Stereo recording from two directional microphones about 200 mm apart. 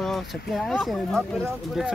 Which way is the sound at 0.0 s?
Centre (ahead or behind).